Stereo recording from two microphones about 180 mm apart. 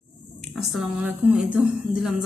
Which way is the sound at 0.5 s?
Centre (ahead or behind).